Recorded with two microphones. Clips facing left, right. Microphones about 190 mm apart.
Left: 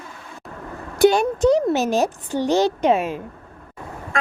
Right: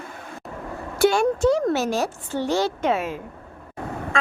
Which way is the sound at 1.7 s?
20° left (ahead or behind).